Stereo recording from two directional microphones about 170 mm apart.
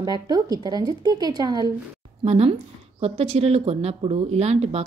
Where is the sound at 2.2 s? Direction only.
35° right (ahead or behind).